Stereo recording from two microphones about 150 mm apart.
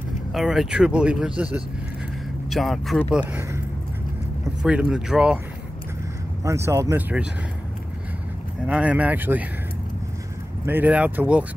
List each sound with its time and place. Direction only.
0.3 s speech: centre (ahead or behind)
4.6 s speech: 5° right (ahead or behind)
6.4 s speech: 20° right (ahead or behind)
8.6 s speech: 10° right (ahead or behind)
10.6 s speech: 10° right (ahead or behind)